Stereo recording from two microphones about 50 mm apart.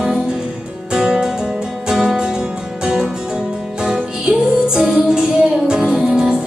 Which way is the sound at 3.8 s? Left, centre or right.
Centre.